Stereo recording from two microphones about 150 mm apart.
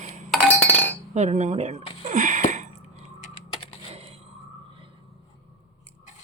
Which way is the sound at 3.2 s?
50° left (ahead or behind).